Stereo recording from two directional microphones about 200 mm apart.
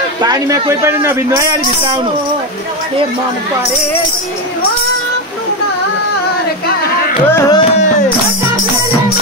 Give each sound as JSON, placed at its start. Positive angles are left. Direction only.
{"t": 0.2, "sound": "a man's voice", "side_deg": -20}
{"t": 7.2, "sound": "music", "side_deg": 15}